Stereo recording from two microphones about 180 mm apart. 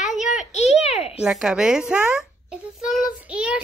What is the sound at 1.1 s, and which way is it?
A child's voice, 5° right (ahead or behind).